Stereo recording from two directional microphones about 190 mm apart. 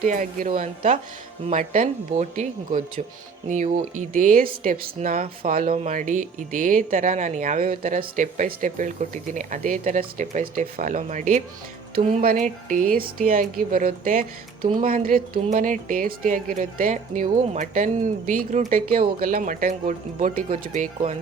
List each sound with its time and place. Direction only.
0.0 s speech: 45° right (ahead or behind)